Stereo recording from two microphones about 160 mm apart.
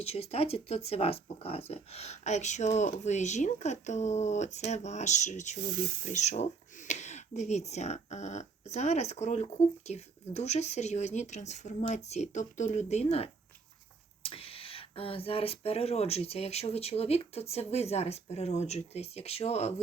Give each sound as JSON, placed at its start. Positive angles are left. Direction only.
{"t": 0.0, "sound": "speech", "side_deg": 40}